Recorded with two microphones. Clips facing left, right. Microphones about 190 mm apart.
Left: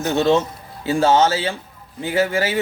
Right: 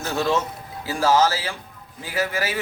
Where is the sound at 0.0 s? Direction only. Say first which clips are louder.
Left 6 dB; 25° left (ahead or behind).